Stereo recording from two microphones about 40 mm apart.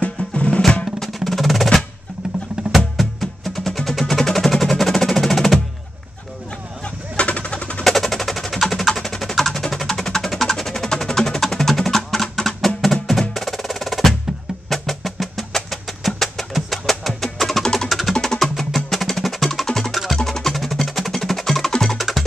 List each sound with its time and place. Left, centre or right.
0.0 s drum: left
1.0 s percussion: centre
3.0 s music: centre
7.2 s a sound: left
7.8 s music: centre
18.1 s music: centre
18.9 s music: centre
21.9 s music: centre